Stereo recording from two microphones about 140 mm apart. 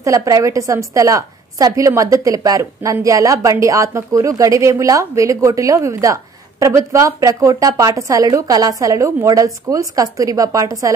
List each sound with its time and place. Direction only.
0.0 s a woman's voice: 25° right (ahead or behind)